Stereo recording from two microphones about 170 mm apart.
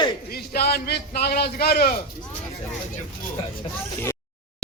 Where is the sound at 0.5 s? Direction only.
65° left (ahead or behind).